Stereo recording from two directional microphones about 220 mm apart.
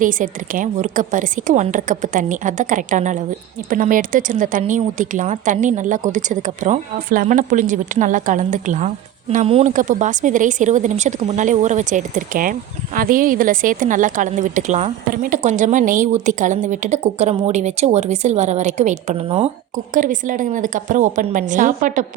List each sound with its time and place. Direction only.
0.0 s a woman's voice: 40° right (ahead or behind)